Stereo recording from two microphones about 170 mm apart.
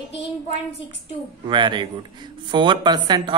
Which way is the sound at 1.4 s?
30° right (ahead or behind).